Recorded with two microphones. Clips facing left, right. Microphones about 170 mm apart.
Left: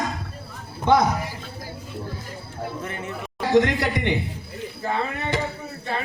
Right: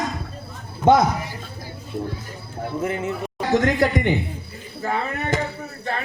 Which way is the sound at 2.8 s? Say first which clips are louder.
Right 7 dB; 25° right (ahead or behind).